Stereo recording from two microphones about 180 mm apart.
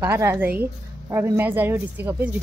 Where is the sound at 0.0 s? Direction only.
15° right (ahead or behind).